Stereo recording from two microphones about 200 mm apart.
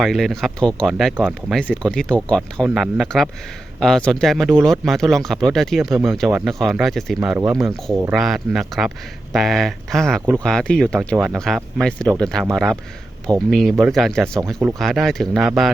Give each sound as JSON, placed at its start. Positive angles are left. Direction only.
{"t": 0.0, "sound": "speech", "side_deg": 0}
{"t": 7.2, "sound": "speech", "side_deg": -10}
{"t": 7.6, "sound": "speech", "side_deg": 0}
{"t": 7.9, "sound": "speech", "side_deg": -10}
{"t": 8.2, "sound": "speech", "side_deg": 0}
{"t": 13.5, "sound": "speech", "side_deg": 0}